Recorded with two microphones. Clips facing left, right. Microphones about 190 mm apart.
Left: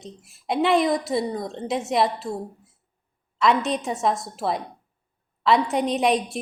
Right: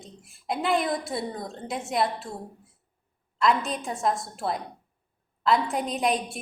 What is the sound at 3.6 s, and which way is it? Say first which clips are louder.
A woman's voice: left 5 dB; centre (ahead or behind).